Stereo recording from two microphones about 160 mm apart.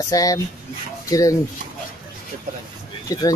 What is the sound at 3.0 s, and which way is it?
Speech, 20° left (ahead or behind).